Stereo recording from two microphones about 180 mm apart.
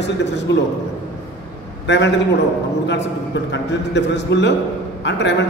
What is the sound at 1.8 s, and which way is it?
Speech, 80° left.